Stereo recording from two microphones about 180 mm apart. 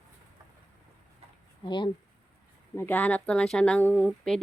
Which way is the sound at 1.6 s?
25° left (ahead or behind).